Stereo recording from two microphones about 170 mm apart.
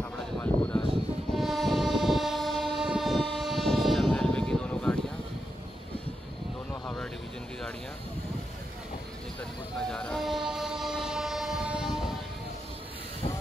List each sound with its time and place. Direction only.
0.4 s a sound: 5° left (ahead or behind)
1.3 s train: centre (ahead or behind)
6.7 s vehicle: 5° left (ahead or behind)
9.8 s train: 5° left (ahead or behind)